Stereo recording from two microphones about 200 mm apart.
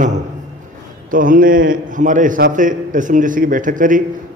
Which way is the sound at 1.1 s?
45° right (ahead or behind).